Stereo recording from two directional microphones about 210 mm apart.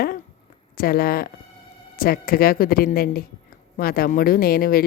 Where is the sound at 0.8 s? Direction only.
45° left (ahead or behind).